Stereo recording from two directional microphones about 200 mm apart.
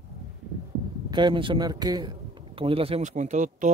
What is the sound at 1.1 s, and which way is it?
A man's voice, 25° right (ahead or behind).